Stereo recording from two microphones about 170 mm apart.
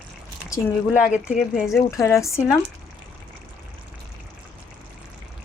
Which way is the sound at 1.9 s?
15° left (ahead or behind).